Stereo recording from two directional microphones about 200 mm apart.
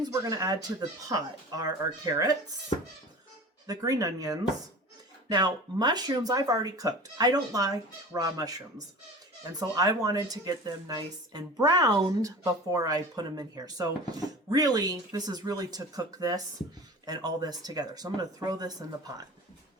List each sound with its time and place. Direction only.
0.0 s speech: 15° right (ahead or behind)
3.7 s speech: 15° right (ahead or behind)
9.6 s speech: 20° right (ahead or behind)